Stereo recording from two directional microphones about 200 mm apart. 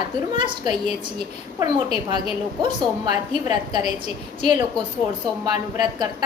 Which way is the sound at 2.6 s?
20° right (ahead or behind).